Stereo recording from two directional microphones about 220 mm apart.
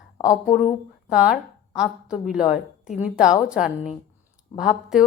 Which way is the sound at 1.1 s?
5° right (ahead or behind).